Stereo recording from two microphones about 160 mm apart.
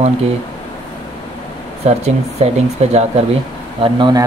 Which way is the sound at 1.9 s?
45° right (ahead or behind).